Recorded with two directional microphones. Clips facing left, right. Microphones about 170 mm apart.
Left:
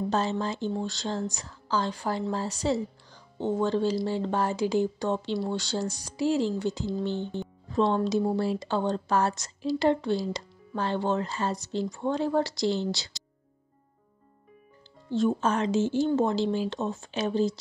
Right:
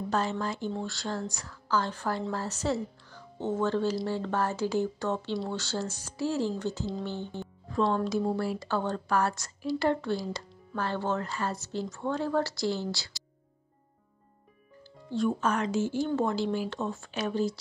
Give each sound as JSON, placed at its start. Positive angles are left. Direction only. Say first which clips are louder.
{"t": 0.1, "sound": "speech", "louder": "right 1 dB", "side_deg": 25}
{"t": 15.0, "sound": "speech", "louder": "left 3 dB", "side_deg": 25}